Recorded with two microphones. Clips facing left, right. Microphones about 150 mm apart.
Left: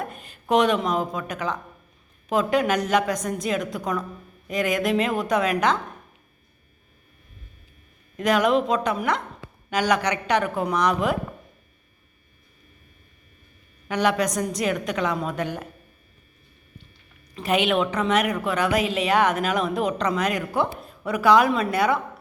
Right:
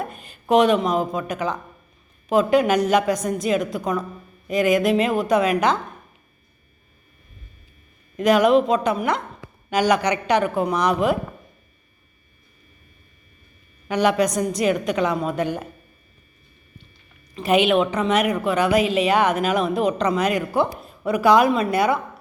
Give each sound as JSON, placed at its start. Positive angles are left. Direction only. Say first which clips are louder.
{"t": 0.0, "sound": "a woman's voice", "louder": "right 2 dB", "side_deg": 0}
{"t": 8.2, "sound": "a woman's voice", "louder": "right 4 dB", "side_deg": -5}
{"t": 13.9, "sound": "a woman's voice", "louder": "right 3 dB", "side_deg": -5}
{"t": 17.3, "sound": "a woman's voice", "louder": "right 4 dB", "side_deg": -5}
{"t": 19.9, "sound": "a man's voice", "louder": "right 3 dB", "side_deg": -25}
{"t": 20.1, "sound": "a woman's voice", "louder": "right 3 dB", "side_deg": -5}